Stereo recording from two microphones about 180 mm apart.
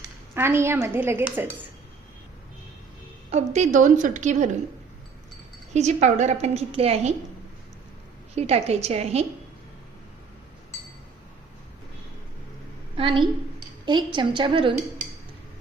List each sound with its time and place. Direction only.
0.3 s a woman's voice: 15° right (ahead or behind)
3.3 s a woman's voice: 40° right (ahead or behind)
5.7 s a woman's voice: 40° right (ahead or behind)
8.4 s a woman's voice: 35° right (ahead or behind)
13.0 s a woman's voice: 30° right (ahead or behind)